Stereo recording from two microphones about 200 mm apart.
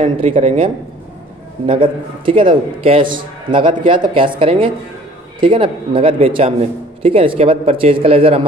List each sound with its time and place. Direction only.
0.0 s speech: 30° right (ahead or behind)
1.7 s a man's voice: 25° right (ahead or behind)